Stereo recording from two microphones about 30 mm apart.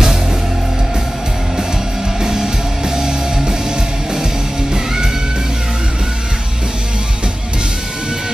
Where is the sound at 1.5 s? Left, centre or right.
Right.